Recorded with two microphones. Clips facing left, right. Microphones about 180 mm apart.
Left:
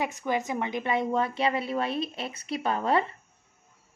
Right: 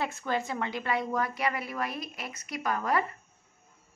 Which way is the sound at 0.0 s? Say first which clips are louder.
Left 2 dB; 15° left (ahead or behind).